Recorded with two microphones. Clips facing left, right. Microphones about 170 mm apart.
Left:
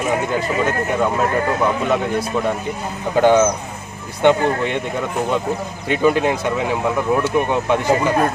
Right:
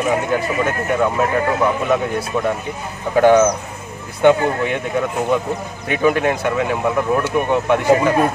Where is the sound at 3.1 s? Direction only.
Centre (ahead or behind).